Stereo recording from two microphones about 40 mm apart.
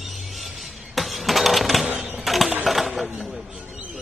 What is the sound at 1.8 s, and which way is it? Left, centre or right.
Typewriter, right.